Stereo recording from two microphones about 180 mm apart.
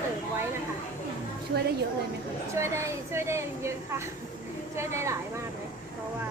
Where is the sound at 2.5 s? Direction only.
15° right (ahead or behind).